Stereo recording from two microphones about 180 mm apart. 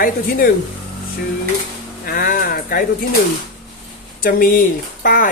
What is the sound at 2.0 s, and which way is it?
Speech, 50° left (ahead or behind).